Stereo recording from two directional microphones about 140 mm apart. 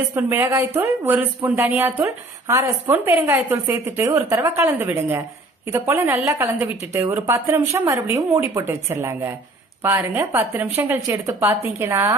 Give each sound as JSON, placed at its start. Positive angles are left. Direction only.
{"t": 0.2, "sound": "a woman's voice", "side_deg": -15}